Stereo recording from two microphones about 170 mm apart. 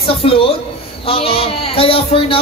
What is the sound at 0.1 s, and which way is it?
Speech, 35° left (ahead or behind).